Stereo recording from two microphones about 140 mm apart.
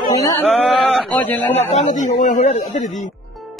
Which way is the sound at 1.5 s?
55° left (ahead or behind).